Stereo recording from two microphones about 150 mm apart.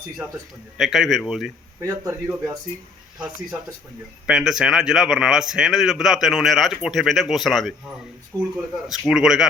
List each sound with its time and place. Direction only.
0.8 s a man's voice: centre (ahead or behind)
1.8 s a man's voice: 20° right (ahead or behind)
4.3 s a man's voice: 5° right (ahead or behind)
8.3 s a man's voice: 25° right (ahead or behind)
8.9 s a man's voice: 5° right (ahead or behind)